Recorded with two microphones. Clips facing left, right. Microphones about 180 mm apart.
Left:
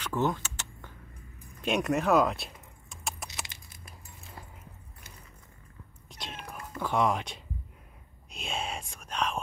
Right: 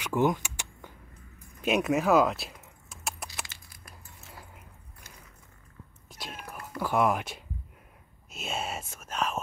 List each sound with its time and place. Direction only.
0.0 s vehicle: 10° right (ahead or behind)
1.6 s keys jangling: 5° right (ahead or behind)
3.4 s a sound: 25° left (ahead or behind)
6.0 s cat: 5° right (ahead or behind)
6.8 s speech: 5° right (ahead or behind)
8.3 s a sound: 5° right (ahead or behind)
8.9 s whispering: 5° right (ahead or behind)